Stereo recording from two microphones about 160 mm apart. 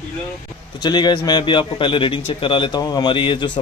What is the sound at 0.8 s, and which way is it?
A man's voice, 25° left (ahead or behind).